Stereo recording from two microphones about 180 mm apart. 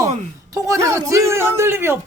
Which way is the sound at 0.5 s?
15° right (ahead or behind).